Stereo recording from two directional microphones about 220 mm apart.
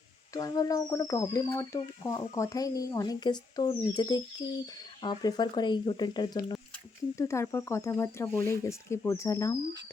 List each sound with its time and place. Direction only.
0.3 s speech: 15° left (ahead or behind)